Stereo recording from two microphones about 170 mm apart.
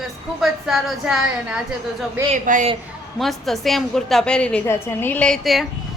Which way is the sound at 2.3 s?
45° right (ahead or behind).